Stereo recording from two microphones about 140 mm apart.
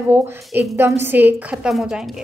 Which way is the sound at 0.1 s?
15° right (ahead or behind).